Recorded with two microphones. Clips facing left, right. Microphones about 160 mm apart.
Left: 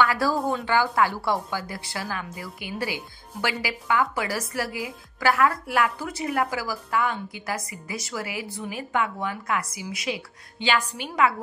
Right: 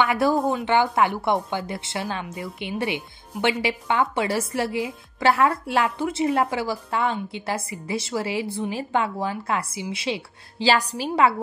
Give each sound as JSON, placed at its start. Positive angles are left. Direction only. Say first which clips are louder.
{"t": 0.0, "sound": "a woman's voice", "louder": "right 3 dB", "side_deg": -20}